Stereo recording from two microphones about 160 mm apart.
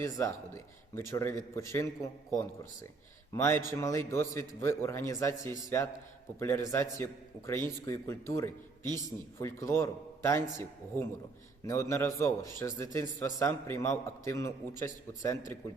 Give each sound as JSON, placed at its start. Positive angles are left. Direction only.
{"t": 0.0, "sound": "a man's voice", "side_deg": 15}
{"t": 3.3, "sound": "a man's voice", "side_deg": 15}